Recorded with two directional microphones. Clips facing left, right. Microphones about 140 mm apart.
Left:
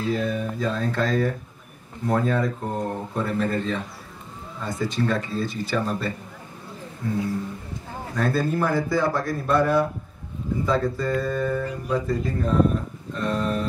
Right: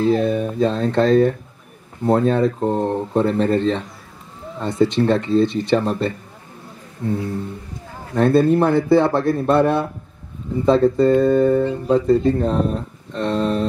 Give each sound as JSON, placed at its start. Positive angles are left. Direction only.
{"t": 0.0, "sound": "speech", "side_deg": -25}
{"t": 8.2, "sound": "speech", "side_deg": -25}